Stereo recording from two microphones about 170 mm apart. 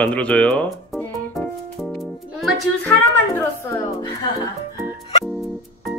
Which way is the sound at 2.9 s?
15° left (ahead or behind).